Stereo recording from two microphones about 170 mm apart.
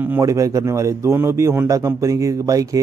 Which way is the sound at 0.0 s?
15° right (ahead or behind).